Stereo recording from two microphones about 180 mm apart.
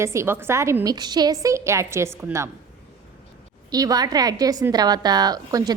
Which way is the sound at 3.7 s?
20° right (ahead or behind).